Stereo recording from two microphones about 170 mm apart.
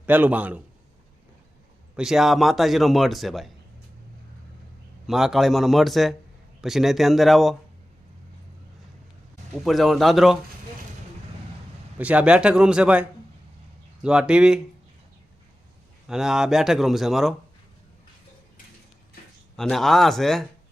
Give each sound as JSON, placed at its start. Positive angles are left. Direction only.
{"t": 0.0, "sound": "a man's voice", "side_deg": -10}
{"t": 2.0, "sound": "a man's voice", "side_deg": 0}
{"t": 5.0, "sound": "a man's voice", "side_deg": 0}
{"t": 9.6, "sound": "a man's voice", "side_deg": 0}
{"t": 11.9, "sound": "a man's voice", "side_deg": -10}
{"t": 16.0, "sound": "a man's voice", "side_deg": -5}
{"t": 19.5, "sound": "a man's voice", "side_deg": 0}